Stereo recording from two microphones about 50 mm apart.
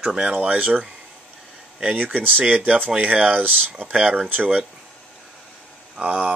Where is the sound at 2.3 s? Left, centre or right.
Right.